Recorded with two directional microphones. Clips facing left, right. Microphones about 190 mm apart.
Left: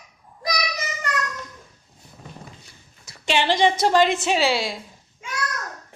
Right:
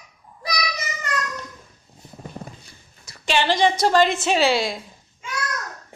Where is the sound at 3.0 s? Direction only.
20° left (ahead or behind).